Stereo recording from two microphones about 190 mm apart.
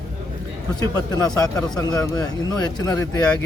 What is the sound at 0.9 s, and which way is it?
A man's voice, 20° left (ahead or behind).